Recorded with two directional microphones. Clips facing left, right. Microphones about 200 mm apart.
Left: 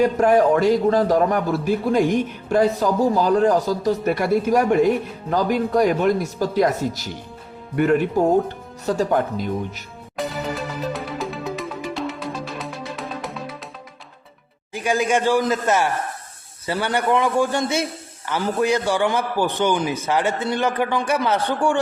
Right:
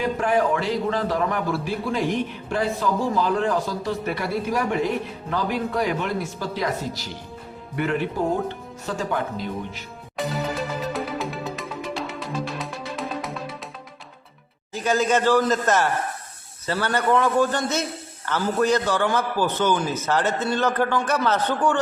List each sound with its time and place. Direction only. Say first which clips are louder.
0.0 s a man's voice: left 6 dB; 45° left (ahead or behind)
10.2 s music: even; centre (ahead or behind)
14.7 s a man's voice: left 1 dB; 10° left (ahead or behind)